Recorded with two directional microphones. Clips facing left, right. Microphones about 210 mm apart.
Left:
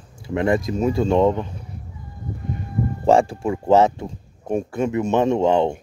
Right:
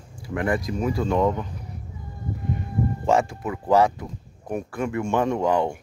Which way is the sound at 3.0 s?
30° left (ahead or behind).